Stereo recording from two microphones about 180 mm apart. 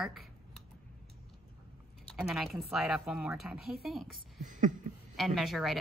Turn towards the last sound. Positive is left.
turn(degrees=0)  # may be behind; listen again after turning